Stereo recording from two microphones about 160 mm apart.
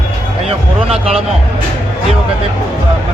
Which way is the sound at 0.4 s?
40° right (ahead or behind).